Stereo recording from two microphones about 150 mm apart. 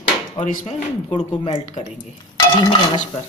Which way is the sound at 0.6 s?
40° left (ahead or behind).